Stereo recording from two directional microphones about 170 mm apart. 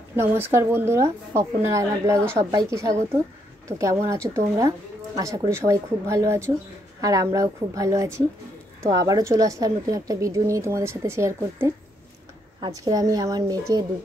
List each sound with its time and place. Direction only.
0.1 s a woman's voice: 10° right (ahead or behind)